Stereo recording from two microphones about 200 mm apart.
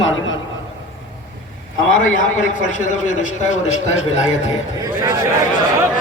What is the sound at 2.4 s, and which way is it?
A man's voice, 40° left (ahead or behind).